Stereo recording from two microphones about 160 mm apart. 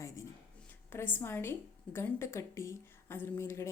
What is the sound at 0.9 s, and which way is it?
A woman's voice, 15° left (ahead or behind).